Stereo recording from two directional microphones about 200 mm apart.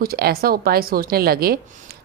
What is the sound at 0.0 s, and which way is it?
A woman's voice, 50° right (ahead or behind).